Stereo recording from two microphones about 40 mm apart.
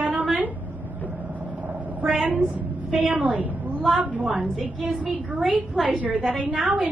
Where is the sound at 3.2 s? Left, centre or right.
Right.